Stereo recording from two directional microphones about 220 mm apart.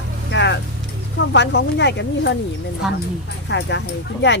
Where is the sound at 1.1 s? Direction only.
50° left (ahead or behind).